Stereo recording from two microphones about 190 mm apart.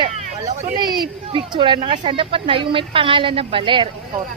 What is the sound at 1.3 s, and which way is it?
A woman's voice, 25° right (ahead or behind).